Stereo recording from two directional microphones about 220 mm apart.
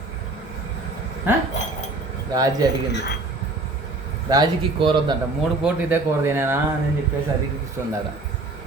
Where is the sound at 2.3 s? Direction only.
15° right (ahead or behind).